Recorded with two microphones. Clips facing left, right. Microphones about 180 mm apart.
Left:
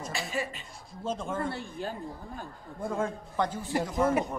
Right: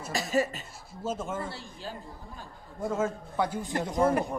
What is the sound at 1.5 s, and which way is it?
Speech, 55° left (ahead or behind).